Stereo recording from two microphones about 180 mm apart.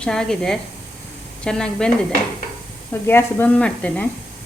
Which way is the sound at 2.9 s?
10° left (ahead or behind).